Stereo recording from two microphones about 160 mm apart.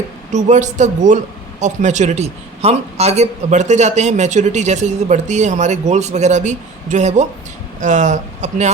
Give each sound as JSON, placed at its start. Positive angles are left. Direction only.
{"t": 0.3, "sound": "speech", "side_deg": -50}